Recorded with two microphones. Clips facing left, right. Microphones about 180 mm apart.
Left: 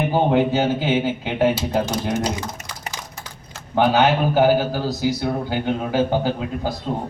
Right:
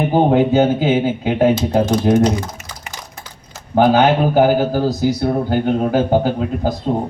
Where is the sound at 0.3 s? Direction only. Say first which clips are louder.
Right 5 dB; 50° right (ahead or behind).